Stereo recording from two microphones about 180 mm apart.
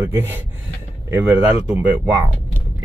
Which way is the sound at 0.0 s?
10° right (ahead or behind).